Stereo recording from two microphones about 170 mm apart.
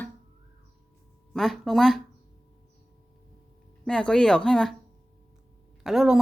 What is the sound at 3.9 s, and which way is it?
Speech, 5° left (ahead or behind).